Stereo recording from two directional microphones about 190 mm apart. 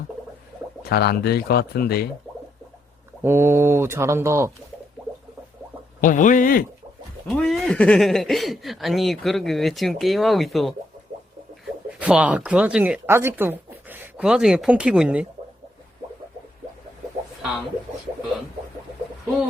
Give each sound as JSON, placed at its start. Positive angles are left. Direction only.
{"t": 0.9, "sound": "speech", "side_deg": 55}
{"t": 2.3, "sound": "a sound", "side_deg": 0}
{"t": 3.2, "sound": "speech", "side_deg": -10}
{"t": 6.0, "sound": "speech", "side_deg": 45}
{"t": 7.3, "sound": "speech", "side_deg": 0}
{"t": 11.9, "sound": "speech", "side_deg": -5}